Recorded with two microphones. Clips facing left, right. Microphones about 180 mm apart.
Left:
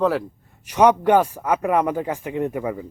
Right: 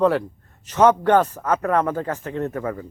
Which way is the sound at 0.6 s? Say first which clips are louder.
Even; 15° left (ahead or behind).